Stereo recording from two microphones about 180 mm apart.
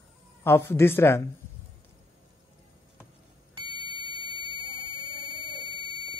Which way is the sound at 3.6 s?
25° right (ahead or behind).